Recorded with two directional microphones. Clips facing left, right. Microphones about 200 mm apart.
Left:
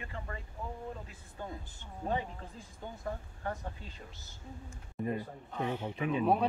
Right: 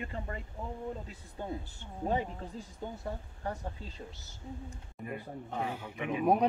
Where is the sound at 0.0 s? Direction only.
25° right (ahead or behind).